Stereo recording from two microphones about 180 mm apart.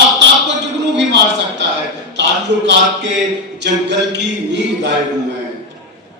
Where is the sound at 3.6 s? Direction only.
75° right (ahead or behind).